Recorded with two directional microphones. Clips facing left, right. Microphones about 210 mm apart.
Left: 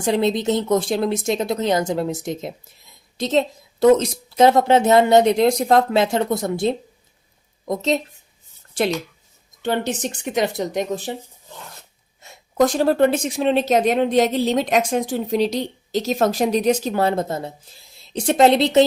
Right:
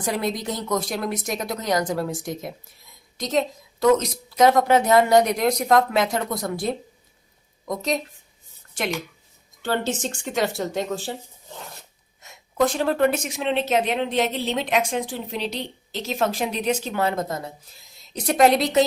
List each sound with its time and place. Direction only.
0.0 s speech: 25° left (ahead or behind)
9.6 s speech: 20° left (ahead or behind)
12.2 s a woman's voice: 35° left (ahead or behind)